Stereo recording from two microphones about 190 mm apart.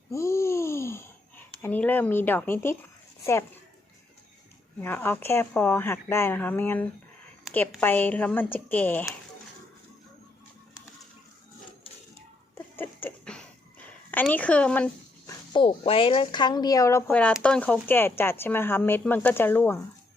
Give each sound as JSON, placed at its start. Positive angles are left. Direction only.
{"t": 0.1, "sound": "gasp", "side_deg": 15}
{"t": 1.6, "sound": "speech", "side_deg": 10}
{"t": 4.8, "sound": "speech", "side_deg": 10}
{"t": 12.5, "sound": "a sound", "side_deg": 10}
{"t": 15.3, "sound": "speech", "side_deg": 25}